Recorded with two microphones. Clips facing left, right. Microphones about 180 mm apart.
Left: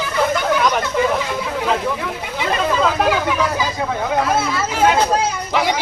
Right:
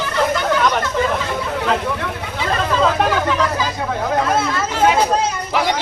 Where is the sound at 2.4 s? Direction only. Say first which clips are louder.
Even; 15° left (ahead or behind).